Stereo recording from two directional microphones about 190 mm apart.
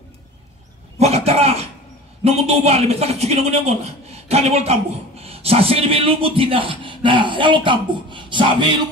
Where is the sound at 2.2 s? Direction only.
35° right (ahead or behind).